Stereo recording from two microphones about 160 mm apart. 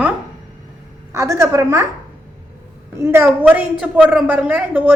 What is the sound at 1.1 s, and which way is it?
Speech, 20° right (ahead or behind).